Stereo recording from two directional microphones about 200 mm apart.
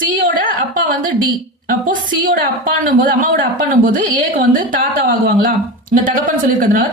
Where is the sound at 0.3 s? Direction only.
45° right (ahead or behind).